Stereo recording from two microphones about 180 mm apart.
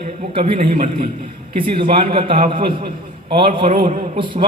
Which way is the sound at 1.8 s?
30° right (ahead or behind).